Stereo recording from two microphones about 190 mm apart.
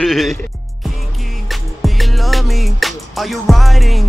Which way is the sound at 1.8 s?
Centre (ahead or behind).